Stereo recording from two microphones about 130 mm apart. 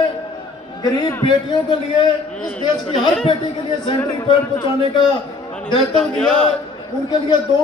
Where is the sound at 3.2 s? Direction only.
40° left (ahead or behind).